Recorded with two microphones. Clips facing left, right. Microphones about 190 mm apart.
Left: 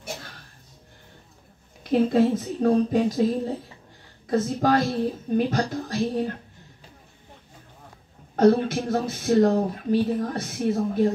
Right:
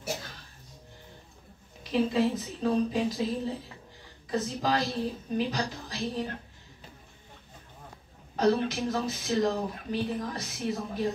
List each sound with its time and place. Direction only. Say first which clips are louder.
1.9 s speech: left 6 dB; 50° left (ahead or behind)
8.4 s speech: left 7 dB; 50° left (ahead or behind)